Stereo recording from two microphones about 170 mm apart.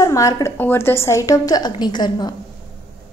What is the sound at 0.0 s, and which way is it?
A woman's voice, 20° left (ahead or behind).